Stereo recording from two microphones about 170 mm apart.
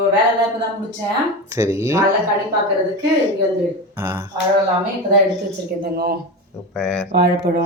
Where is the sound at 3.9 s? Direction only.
20° right (ahead or behind).